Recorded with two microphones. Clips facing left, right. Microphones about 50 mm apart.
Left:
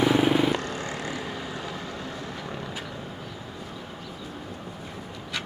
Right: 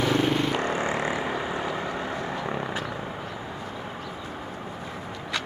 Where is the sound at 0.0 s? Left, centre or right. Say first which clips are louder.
Left 2 dB; centre.